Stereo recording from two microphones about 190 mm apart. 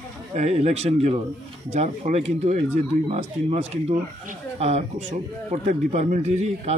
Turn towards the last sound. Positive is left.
turn(degrees=-35)  # may be behind; listen again after turning